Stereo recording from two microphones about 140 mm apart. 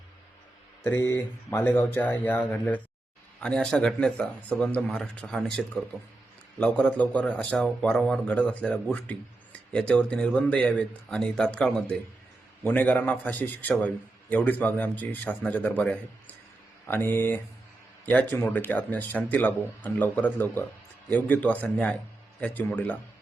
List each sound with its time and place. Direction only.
0.9 s a man's voice: 20° left (ahead or behind)